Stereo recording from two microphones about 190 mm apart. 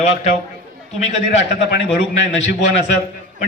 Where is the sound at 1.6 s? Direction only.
65° left (ahead or behind).